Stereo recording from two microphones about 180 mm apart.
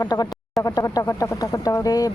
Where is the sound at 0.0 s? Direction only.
20° left (ahead or behind).